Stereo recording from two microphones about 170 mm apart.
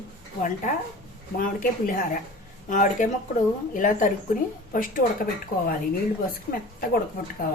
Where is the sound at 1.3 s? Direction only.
55° left (ahead or behind).